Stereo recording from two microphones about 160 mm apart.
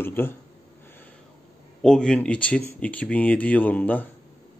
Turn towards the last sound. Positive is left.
turn(degrees=10)  # may be behind; listen again after turning